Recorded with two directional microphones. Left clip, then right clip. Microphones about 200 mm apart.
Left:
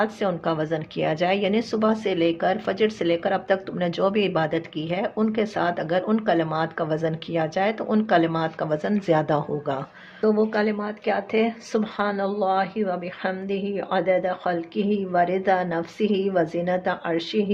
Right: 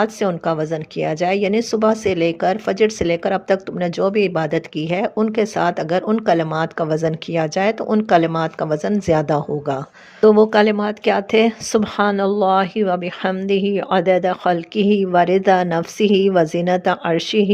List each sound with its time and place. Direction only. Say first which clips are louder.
0.0 s speech: right 5 dB; 35° right (ahead or behind)
10.2 s speech: right 10 dB; 50° right (ahead or behind)